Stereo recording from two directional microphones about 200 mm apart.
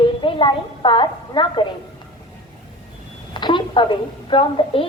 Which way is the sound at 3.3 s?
25° left (ahead or behind).